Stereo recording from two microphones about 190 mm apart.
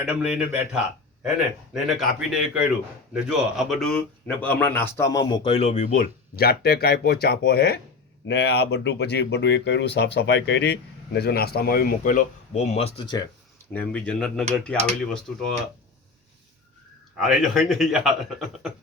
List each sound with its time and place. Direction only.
0.0 s a man's voice: 5° right (ahead or behind); by 13.2 s 25° left (ahead or behind)
13.7 s a man's voice: 5° left (ahead or behind)
17.2 s a man's voice: centre (ahead or behind)